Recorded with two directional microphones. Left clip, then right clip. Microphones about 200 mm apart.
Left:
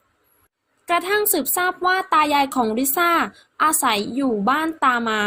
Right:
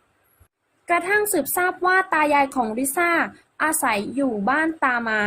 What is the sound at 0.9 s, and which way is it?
A woman's voice, 35° left (ahead or behind).